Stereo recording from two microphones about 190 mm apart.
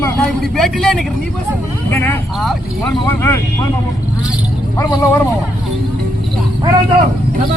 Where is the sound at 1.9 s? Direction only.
5° left (ahead or behind).